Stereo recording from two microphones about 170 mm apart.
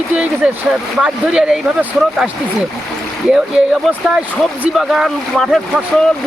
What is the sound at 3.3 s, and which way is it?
Speech, centre (ahead or behind).